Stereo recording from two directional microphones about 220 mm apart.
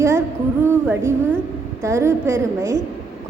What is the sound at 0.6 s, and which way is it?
A woman's voice, 10° right (ahead or behind).